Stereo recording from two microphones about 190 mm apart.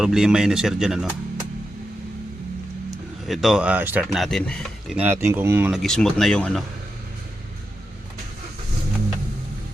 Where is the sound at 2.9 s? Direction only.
Centre (ahead or behind).